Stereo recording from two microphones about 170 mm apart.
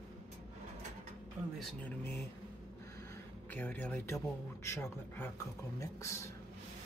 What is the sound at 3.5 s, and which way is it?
A man's voice, 10° left (ahead or behind).